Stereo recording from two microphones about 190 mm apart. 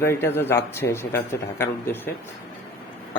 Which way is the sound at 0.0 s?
10° left (ahead or behind).